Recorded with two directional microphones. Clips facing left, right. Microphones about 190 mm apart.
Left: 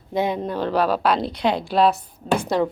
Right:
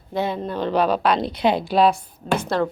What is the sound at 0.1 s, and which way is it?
A woman's voice, 15° left (ahead or behind).